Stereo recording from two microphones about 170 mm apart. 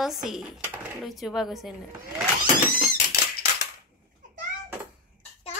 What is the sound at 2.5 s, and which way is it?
Cat, 50° left (ahead or behind).